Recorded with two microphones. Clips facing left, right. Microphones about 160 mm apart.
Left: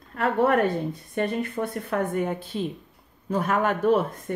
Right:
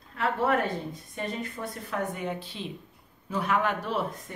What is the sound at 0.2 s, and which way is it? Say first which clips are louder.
A woman's voice: left 5 dB; 55° left (ahead or behind).